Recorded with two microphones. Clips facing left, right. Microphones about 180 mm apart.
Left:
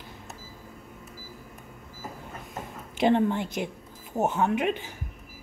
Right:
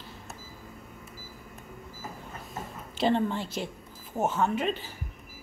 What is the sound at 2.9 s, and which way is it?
A woman's voice, 15° left (ahead or behind).